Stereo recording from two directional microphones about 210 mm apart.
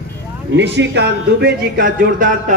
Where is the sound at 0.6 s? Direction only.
55° right (ahead or behind).